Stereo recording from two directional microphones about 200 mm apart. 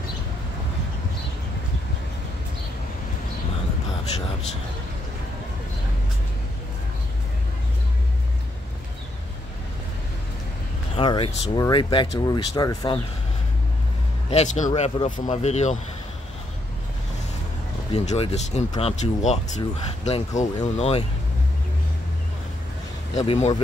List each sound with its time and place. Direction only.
11.0 s speech: 25° left (ahead or behind)
14.3 s speech: 35° left (ahead or behind)
14.7 s speech: 25° left (ahead or behind)
15.0 s speech: 40° left (ahead or behind)
17.9 s speech: 30° left (ahead or behind)
23.1 s speech: 35° left (ahead or behind)